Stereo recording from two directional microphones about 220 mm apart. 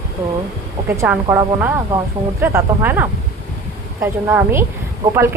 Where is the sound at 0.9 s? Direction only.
10° right (ahead or behind).